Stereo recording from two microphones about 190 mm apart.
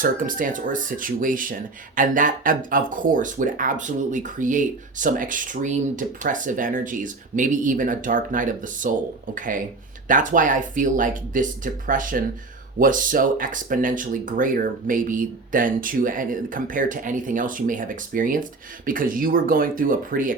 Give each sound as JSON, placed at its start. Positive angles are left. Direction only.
{"t": 0.0, "sound": "speech", "side_deg": -45}